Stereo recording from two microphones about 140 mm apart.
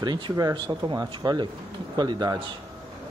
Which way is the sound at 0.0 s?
30° right (ahead or behind).